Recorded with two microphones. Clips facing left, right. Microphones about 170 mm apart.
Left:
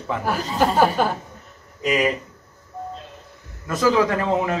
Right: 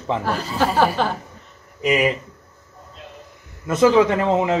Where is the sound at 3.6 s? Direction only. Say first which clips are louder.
Right 4 dB; 20° right (ahead or behind).